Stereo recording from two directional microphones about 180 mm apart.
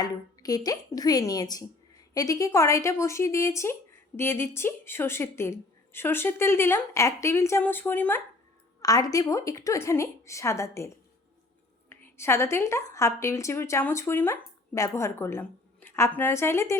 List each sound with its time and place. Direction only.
0.0 s a woman's voice: 20° left (ahead or behind)